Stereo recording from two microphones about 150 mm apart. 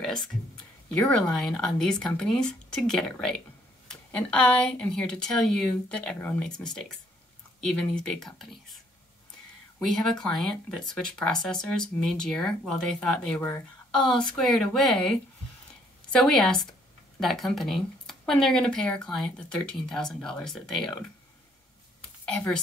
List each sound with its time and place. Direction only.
0.0 s speech: 5° left (ahead or behind)
9.8 s speech: 5° left (ahead or behind)
22.2 s speech: 5° left (ahead or behind)